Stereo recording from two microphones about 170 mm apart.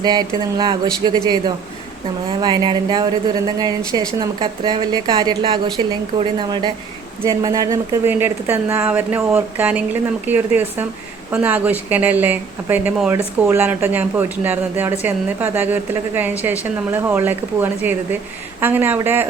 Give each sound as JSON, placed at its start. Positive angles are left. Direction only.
{"t": 0.0, "sound": "a woman's voice", "side_deg": -25}
{"t": 2.4, "sound": "a woman's voice", "side_deg": -25}